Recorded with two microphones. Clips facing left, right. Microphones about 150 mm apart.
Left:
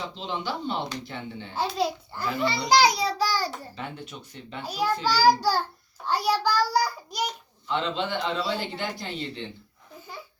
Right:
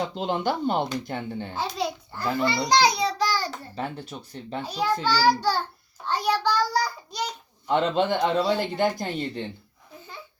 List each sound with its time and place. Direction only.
0.0 s a man's voice: 55° right (ahead or behind)
1.5 s a child's voice: 5° left (ahead or behind)
3.8 s speech: 35° right (ahead or behind)
4.6 s child singing: 10° left (ahead or behind)
6.1 s a child's voice: 10° left (ahead or behind)
7.7 s a man's voice: 50° right (ahead or behind)